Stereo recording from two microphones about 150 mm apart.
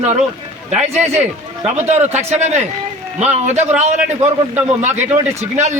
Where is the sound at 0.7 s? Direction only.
50° right (ahead or behind).